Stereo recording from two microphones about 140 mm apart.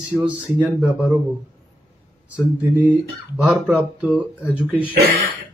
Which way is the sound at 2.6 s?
10° right (ahead or behind).